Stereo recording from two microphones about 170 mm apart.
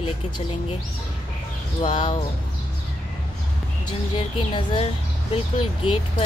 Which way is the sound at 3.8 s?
30° left (ahead or behind).